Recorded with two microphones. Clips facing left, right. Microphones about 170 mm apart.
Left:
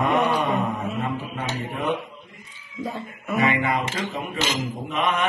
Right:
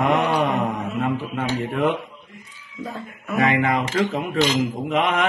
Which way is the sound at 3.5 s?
90° right.